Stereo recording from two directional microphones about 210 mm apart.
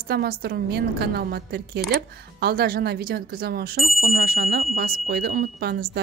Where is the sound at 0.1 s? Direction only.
50° right (ahead or behind).